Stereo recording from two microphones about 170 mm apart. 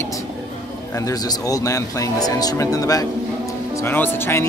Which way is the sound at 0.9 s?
20° left (ahead or behind).